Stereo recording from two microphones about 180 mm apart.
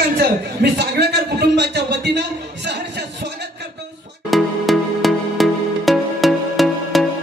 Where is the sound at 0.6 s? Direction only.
70° right (ahead or behind).